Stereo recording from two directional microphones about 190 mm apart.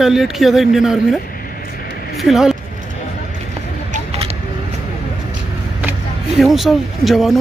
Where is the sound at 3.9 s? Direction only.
35° right (ahead or behind).